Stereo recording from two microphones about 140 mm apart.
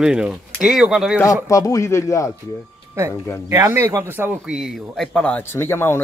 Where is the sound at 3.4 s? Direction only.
20° right (ahead or behind).